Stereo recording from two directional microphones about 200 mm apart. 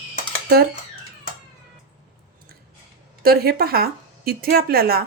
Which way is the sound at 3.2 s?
50° right (ahead or behind).